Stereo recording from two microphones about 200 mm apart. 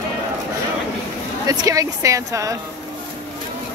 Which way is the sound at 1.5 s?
15° right (ahead or behind).